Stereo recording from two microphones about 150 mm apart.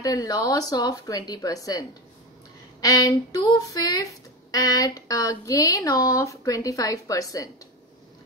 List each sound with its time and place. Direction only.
0.0 s speech: 25° left (ahead or behind)